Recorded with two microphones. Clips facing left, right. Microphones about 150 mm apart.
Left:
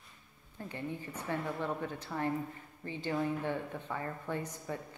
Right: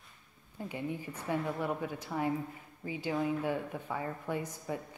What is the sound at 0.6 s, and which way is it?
Speech, 10° right (ahead or behind).